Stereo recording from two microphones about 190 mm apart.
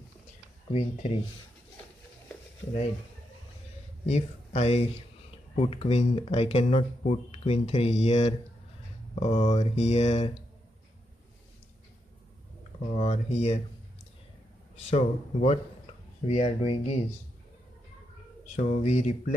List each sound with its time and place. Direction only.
0.7 s speech: 30° left (ahead or behind)
4.0 s speech: 35° left (ahead or behind)
12.9 s speech: 35° left (ahead or behind)
14.9 s speech: 35° left (ahead or behind)
18.6 s speech: 35° left (ahead or behind)